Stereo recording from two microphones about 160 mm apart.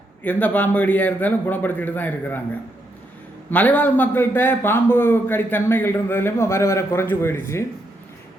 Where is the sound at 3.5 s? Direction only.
10° left (ahead or behind).